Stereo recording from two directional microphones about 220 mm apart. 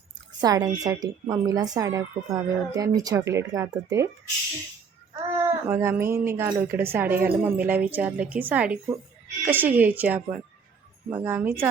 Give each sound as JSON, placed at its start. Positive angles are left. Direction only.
{"t": 0.4, "sound": "a woman's voice", "side_deg": -15}
{"t": 5.4, "sound": "a woman's voice", "side_deg": -10}